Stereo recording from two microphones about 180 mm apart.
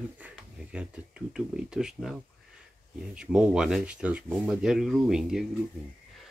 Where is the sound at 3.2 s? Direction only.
5° right (ahead or behind).